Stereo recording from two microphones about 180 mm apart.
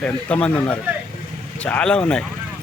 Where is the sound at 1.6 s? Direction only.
5° left (ahead or behind).